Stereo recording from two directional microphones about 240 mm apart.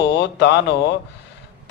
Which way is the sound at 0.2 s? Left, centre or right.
Left.